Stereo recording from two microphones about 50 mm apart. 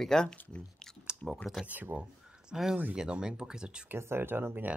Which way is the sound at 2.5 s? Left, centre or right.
Centre.